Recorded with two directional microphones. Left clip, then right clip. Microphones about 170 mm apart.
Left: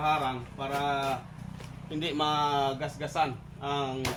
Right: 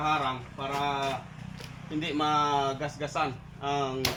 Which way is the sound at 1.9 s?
20° left (ahead or behind).